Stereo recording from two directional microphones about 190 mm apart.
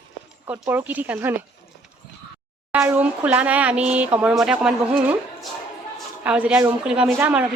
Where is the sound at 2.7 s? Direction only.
5° right (ahead or behind).